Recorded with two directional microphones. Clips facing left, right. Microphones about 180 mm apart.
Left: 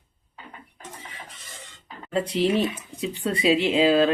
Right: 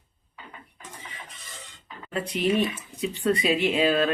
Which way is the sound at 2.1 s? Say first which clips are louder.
Left 2 dB; 30° left (ahead or behind).